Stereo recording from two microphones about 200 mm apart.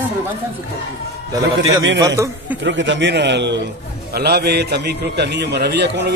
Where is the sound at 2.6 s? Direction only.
65° right (ahead or behind).